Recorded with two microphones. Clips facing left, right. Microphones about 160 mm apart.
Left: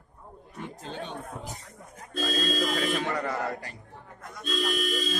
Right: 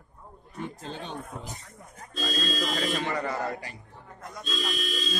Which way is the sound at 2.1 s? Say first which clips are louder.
Left 2 dB; 55° left (ahead or behind).